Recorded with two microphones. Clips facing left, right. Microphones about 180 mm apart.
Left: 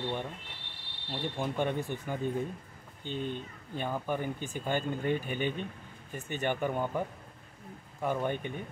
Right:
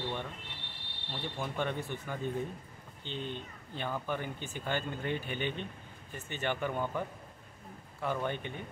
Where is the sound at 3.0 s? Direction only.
45° left (ahead or behind).